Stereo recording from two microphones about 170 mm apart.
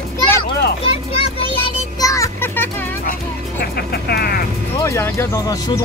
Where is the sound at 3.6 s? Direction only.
65° left (ahead or behind).